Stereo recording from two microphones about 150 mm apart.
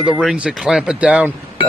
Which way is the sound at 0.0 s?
Centre (ahead or behind).